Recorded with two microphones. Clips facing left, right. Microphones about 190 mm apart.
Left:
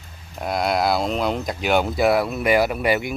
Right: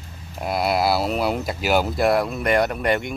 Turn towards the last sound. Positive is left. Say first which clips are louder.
# left 1 dB
turn(degrees=5)  # may be behind; listen again after turning